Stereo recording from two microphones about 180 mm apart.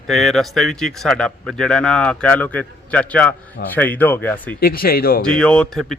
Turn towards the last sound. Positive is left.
turn(degrees=5)  # may be behind; listen again after turning